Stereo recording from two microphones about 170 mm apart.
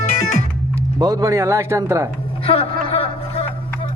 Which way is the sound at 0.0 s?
45° left (ahead or behind).